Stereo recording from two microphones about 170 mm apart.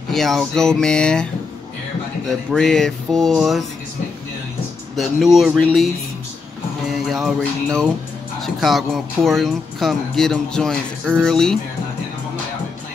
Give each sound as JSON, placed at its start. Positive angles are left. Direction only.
{"t": 0.1, "sound": "speech", "side_deg": 0}
{"t": 2.2, "sound": "speech", "side_deg": 5}
{"t": 4.9, "sound": "speech", "side_deg": 0}
{"t": 7.1, "sound": "speech", "side_deg": 0}